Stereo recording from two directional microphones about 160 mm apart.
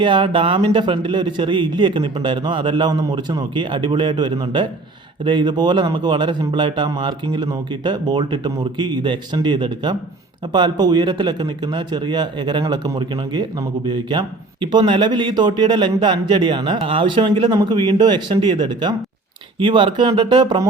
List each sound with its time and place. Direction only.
0.0 s a man's voice: 30° right (ahead or behind)